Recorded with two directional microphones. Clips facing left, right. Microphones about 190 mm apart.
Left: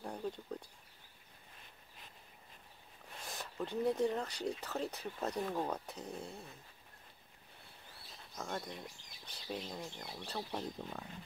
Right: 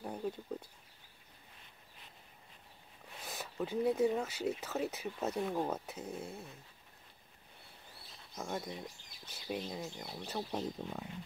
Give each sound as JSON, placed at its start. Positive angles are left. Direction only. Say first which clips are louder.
{"t": 0.0, "sound": "a sound", "louder": "right 2 dB", "side_deg": -5}
{"t": 3.3, "sound": "speech", "louder": "right 3 dB", "side_deg": -5}
{"t": 8.4, "sound": "speech", "louder": "right 2 dB", "side_deg": -10}